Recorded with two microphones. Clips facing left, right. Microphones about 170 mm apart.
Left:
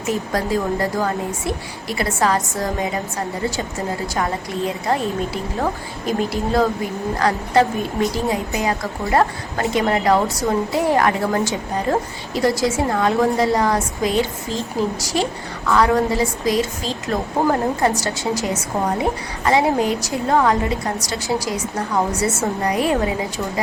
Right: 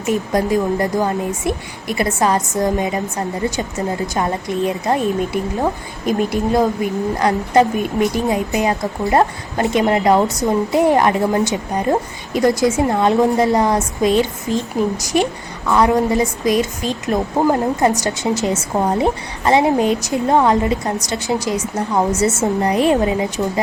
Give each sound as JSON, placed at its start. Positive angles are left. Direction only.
{"t": 0.1, "sound": "a woman's voice", "side_deg": -20}